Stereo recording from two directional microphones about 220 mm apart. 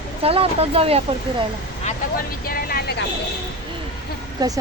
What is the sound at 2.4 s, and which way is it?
Speech, 40° left (ahead or behind).